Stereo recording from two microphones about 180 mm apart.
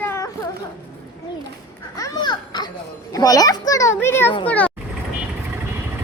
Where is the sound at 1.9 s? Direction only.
20° left (ahead or behind).